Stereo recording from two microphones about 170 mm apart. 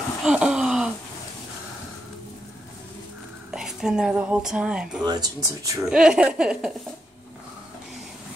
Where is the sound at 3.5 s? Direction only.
5° right (ahead or behind).